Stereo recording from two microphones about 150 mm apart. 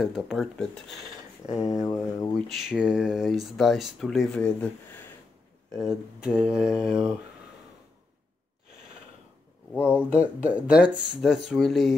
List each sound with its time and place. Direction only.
0.0 s speech: centre (ahead or behind)
1.6 s speech: 25° left (ahead or behind)
2.3 s speech: centre (ahead or behind)
5.8 s speech: 5° right (ahead or behind)
9.8 s speech: 10° right (ahead or behind)